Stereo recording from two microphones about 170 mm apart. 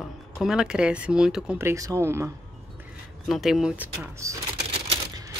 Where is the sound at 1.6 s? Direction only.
15° right (ahead or behind).